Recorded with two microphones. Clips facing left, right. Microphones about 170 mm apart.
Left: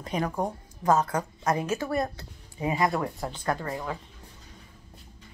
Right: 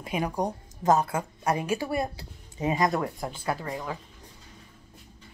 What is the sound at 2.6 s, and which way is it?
Speech, 20° right (ahead or behind).